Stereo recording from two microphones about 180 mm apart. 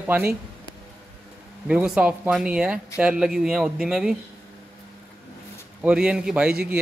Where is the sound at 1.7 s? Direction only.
5° right (ahead or behind).